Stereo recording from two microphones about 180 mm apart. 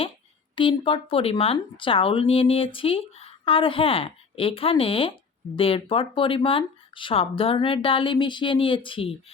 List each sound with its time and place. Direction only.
0.5 s speech: 30° left (ahead or behind)